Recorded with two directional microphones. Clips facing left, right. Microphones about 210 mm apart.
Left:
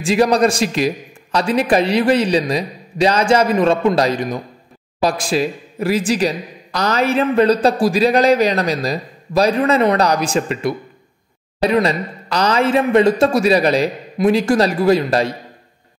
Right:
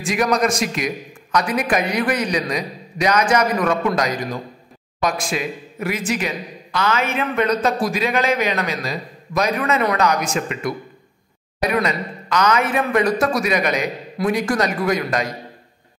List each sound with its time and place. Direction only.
0.0 s a man's voice: 30° left (ahead or behind)